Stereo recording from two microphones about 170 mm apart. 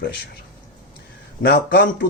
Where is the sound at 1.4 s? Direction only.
70° left (ahead or behind).